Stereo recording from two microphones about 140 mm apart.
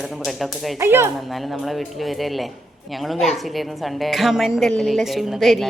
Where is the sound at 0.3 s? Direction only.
Centre (ahead or behind).